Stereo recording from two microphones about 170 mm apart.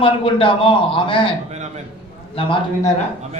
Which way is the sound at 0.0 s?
30° left (ahead or behind).